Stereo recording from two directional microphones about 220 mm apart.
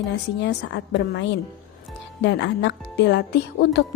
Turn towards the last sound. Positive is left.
turn(degrees=50)  # may be behind; listen again after turning